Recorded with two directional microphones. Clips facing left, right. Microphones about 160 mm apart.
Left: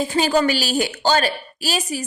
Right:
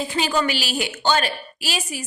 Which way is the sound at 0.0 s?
40° left (ahead or behind).